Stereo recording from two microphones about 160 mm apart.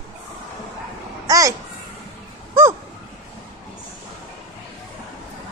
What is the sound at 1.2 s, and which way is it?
Babbling, 20° right (ahead or behind).